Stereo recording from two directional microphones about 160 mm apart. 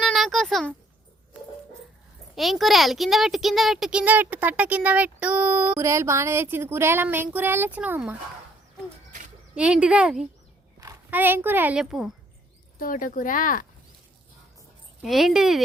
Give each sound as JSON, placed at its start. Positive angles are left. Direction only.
{"t": 0.0, "sound": "a sound", "side_deg": 0}
{"t": 2.3, "sound": "speech", "side_deg": 0}
{"t": 9.6, "sound": "speech", "side_deg": -5}
{"t": 12.8, "sound": "speech", "side_deg": 55}
{"t": 15.0, "sound": "a woman's voice", "side_deg": 0}